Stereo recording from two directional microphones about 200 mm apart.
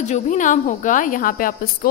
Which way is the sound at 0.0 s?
35° left (ahead or behind).